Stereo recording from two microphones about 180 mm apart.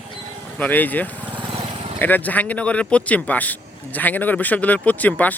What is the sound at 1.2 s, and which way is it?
Vehicle, 25° right (ahead or behind).